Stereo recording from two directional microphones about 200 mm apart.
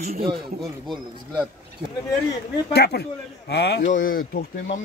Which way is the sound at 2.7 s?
55° left (ahead or behind).